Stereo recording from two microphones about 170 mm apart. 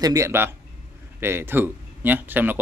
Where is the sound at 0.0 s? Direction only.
20° right (ahead or behind).